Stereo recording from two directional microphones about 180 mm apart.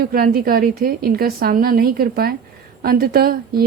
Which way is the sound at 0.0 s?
55° right (ahead or behind).